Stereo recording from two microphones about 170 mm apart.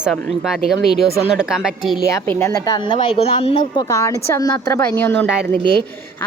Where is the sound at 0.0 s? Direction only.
Centre (ahead or behind).